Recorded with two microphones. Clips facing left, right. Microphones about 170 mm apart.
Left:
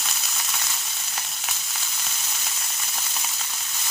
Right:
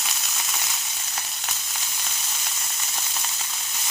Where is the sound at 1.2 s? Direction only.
Centre (ahead or behind).